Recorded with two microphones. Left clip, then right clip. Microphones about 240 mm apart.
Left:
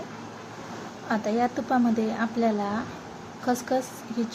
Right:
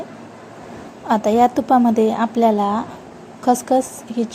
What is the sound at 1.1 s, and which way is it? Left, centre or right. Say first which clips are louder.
A woman's voice: right 11 dB; right.